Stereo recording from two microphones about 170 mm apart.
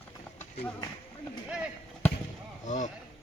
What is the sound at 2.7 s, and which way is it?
Speech, 45° left (ahead or behind).